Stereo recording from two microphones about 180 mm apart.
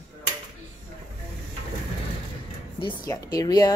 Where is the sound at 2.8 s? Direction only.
25° left (ahead or behind).